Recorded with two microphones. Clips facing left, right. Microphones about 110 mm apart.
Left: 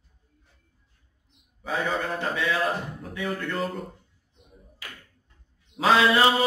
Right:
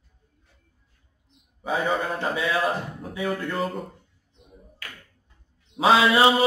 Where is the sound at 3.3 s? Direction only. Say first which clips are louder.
Right 2 dB; 5° right (ahead or behind).